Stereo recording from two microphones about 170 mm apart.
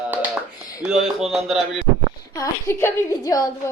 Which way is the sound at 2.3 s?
15° left (ahead or behind).